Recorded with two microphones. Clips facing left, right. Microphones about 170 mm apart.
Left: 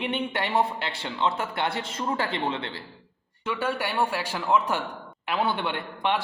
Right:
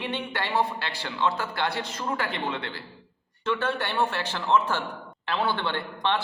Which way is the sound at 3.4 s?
10° left (ahead or behind).